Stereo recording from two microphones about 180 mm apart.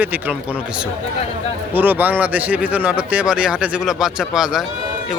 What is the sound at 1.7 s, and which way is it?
Speech, 10° right (ahead or behind).